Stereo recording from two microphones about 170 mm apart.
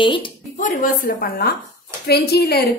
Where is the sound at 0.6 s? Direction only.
55° left (ahead or behind).